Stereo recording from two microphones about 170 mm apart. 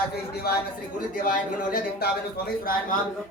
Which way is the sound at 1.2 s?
55° left (ahead or behind).